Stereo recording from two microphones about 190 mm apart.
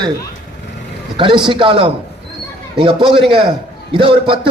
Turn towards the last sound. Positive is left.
turn(degrees=-25)  # may be behind; listen again after turning